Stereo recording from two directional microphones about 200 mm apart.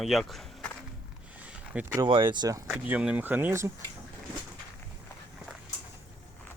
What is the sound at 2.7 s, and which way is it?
Speech, 5° right (ahead or behind).